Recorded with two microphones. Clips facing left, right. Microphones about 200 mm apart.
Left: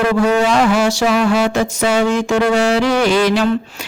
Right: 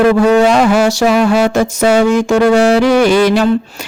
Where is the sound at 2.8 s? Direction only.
10° right (ahead or behind).